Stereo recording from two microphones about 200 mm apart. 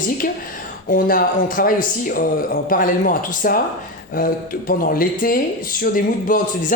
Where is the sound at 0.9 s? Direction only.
45° left (ahead or behind).